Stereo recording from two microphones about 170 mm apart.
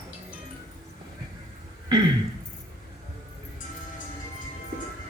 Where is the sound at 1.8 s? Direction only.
25° right (ahead or behind).